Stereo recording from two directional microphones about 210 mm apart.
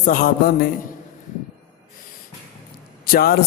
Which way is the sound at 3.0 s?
45° left (ahead or behind).